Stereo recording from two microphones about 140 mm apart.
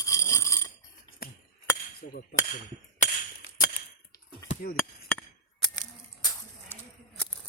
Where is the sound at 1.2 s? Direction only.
90° left.